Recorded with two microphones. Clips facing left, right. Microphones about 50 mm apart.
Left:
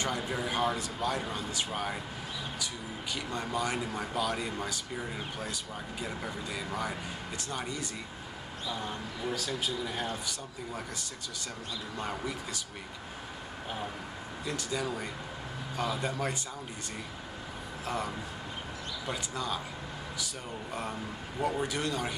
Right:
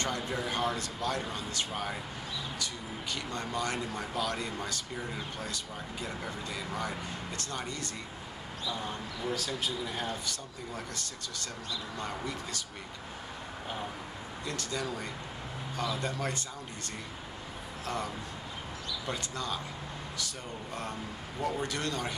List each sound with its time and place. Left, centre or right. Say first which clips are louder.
0.0 s speech: left 1 dB; centre
3.2 s a man's voice: left 2 dB; centre
14.4 s speech: left 2 dB; centre
17.8 s a man's voice: left 1 dB; centre
21.4 s speech: left 2 dB; centre